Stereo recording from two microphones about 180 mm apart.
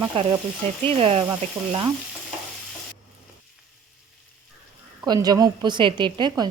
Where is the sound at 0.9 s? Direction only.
35° right (ahead or behind).